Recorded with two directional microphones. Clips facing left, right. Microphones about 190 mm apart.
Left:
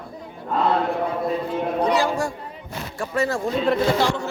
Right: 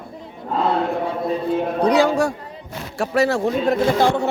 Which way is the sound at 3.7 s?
55° right (ahead or behind).